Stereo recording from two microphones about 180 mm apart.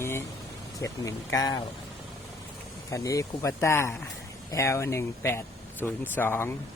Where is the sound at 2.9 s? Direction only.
20° left (ahead or behind).